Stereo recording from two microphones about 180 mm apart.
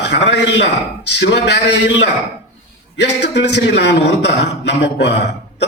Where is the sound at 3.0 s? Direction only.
70° left (ahead or behind).